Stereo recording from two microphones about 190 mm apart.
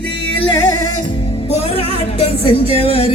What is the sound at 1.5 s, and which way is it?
Music, 30° left (ahead or behind).